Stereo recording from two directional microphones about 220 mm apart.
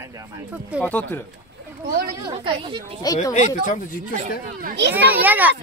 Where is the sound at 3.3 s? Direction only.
35° left (ahead or behind).